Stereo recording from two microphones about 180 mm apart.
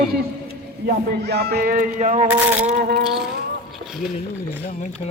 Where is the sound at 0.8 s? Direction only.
65° right (ahead or behind); by 2.3 s 40° right (ahead or behind).